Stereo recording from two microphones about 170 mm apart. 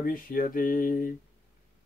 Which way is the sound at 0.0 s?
55° left (ahead or behind).